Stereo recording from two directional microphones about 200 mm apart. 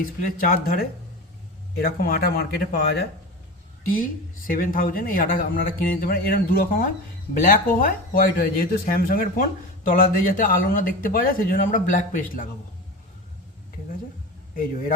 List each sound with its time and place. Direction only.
0.0 s speech: 45° left (ahead or behind)
14.5 s speech: 45° left (ahead or behind)